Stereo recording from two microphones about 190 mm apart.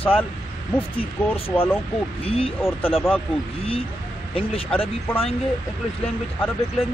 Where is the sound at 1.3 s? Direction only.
30° left (ahead or behind).